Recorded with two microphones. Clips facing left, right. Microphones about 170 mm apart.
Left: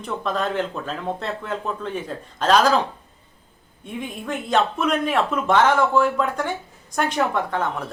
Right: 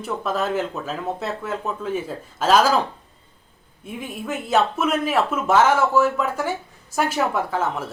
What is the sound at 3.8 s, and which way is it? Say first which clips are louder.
Speech: even; 5° right (ahead or behind).